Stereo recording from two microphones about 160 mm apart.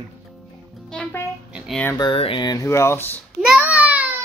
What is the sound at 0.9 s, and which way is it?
Music, 5° left (ahead or behind).